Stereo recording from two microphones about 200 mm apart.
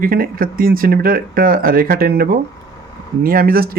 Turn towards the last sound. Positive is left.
turn(degrees=-50)  # may be behind; listen again after turning